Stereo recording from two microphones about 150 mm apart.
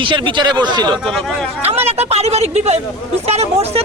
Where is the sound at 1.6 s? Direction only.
45° right (ahead or behind).